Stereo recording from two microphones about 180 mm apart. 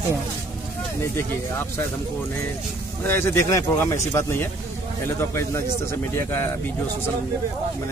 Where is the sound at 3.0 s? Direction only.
15° left (ahead or behind).